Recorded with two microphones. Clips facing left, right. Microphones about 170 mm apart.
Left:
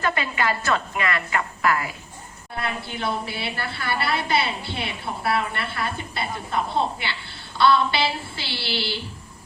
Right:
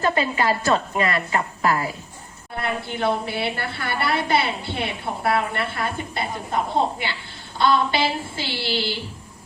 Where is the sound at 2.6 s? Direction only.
50° right (ahead or behind).